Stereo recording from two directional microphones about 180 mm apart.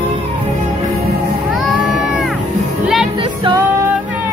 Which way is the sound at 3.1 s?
30° right (ahead or behind).